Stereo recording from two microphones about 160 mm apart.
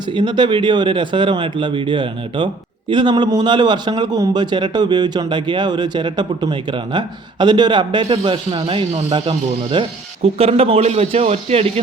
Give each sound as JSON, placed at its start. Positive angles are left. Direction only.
{"t": 0.1, "sound": "a man's voice", "side_deg": -30}